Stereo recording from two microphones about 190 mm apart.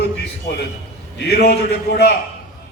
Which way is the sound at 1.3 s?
60° left (ahead or behind).